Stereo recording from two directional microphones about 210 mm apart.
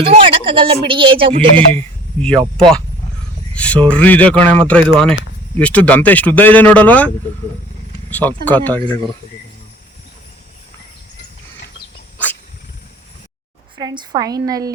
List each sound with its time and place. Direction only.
0.0 s speech: 25° right (ahead or behind)
2.6 s speech: centre (ahead or behind)
8.1 s speech: 10° left (ahead or behind)
13.7 s a woman's voice: 20° right (ahead or behind)